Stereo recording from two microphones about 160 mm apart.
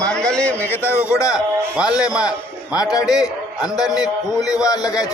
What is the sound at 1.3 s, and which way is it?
A man's voice, 5° right (ahead or behind).